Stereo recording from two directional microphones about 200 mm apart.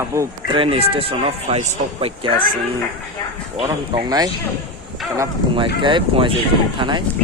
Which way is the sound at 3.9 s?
20° right (ahead or behind).